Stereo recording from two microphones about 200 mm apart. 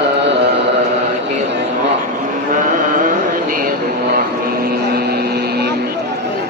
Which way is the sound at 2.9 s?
40° right (ahead or behind).